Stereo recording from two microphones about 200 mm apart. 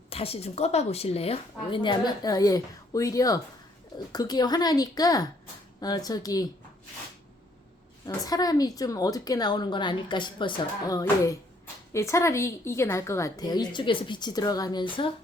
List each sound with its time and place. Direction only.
0.1 s a woman's voice: 30° left (ahead or behind)
8.0 s a woman's voice: 20° left (ahead or behind)